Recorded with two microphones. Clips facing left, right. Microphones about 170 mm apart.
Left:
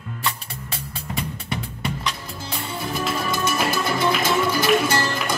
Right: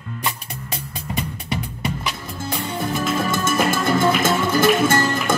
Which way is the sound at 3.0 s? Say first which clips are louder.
Right 1 dB; 50° right (ahead or behind).